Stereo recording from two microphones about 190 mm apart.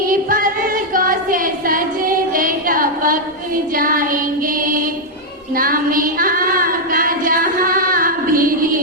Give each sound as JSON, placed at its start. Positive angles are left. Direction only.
{"t": 0.0, "sound": "music", "side_deg": -45}
{"t": 5.5, "sound": "female singing", "side_deg": -50}